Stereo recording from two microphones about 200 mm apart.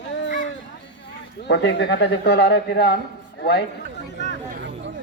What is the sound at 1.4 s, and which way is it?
Speech, 60° left (ahead or behind).